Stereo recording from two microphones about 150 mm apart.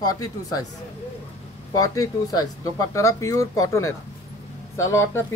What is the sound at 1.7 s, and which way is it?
Speech, 20° left (ahead or behind).